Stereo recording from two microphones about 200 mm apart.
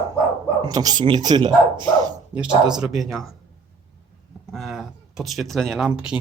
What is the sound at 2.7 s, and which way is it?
Speech, centre (ahead or behind).